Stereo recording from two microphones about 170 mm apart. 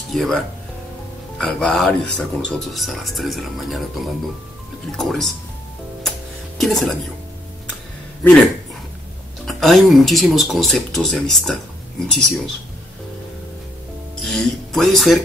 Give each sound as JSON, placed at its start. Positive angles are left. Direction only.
{"t": 0.1, "sound": "speech", "side_deg": 0}
{"t": 1.4, "sound": "speech", "side_deg": 5}
{"t": 4.9, "sound": "speech", "side_deg": 0}
{"t": 6.6, "sound": "speech", "side_deg": 0}
{"t": 8.2, "sound": "speech", "side_deg": 5}
{"t": 9.5, "sound": "speech", "side_deg": 0}
{"t": 14.2, "sound": "speech", "side_deg": 0}